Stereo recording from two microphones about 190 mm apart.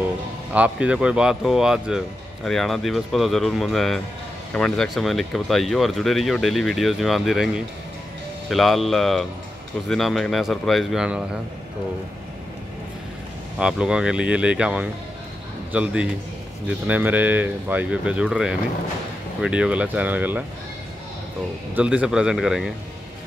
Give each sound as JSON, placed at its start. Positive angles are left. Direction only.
{"t": 0.5, "sound": "speech", "side_deg": -5}
{"t": 13.6, "sound": "speech", "side_deg": -5}
{"t": 21.7, "sound": "speech", "side_deg": -5}